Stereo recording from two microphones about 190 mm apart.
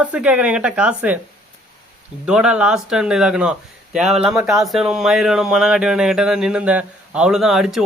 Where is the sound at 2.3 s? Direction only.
5° right (ahead or behind).